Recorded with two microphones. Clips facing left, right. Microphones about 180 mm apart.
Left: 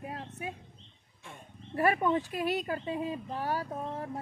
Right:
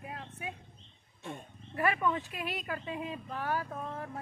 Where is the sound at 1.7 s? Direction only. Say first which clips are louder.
Left 4 dB; 35° left (ahead or behind).